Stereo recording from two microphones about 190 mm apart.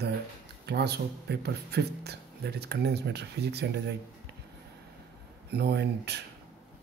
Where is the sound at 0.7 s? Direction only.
60° right (ahead or behind).